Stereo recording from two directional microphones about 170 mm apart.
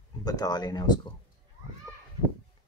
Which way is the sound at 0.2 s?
20° left (ahead or behind).